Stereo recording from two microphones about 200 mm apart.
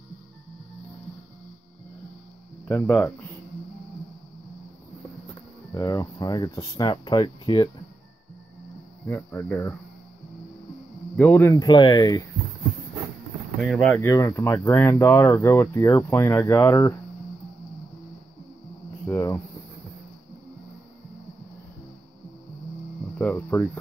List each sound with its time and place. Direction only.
2.7 s speech: 10° left (ahead or behind)
5.7 s speech: 15° left (ahead or behind)
9.0 s speech: 10° left (ahead or behind)
11.1 s speech: 10° left (ahead or behind)
13.6 s speech: 5° left (ahead or behind)
19.0 s cricket: 15° left (ahead or behind)
23.1 s speech: 10° left (ahead or behind)